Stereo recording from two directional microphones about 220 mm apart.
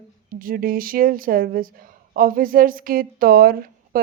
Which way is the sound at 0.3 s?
40° right (ahead or behind).